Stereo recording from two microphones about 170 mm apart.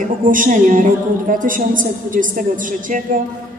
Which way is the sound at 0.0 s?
50° right (ahead or behind).